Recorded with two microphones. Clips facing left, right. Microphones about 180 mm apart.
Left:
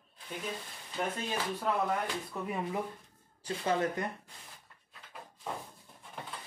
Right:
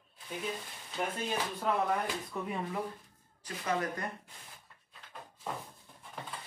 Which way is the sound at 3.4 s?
30° left (ahead or behind).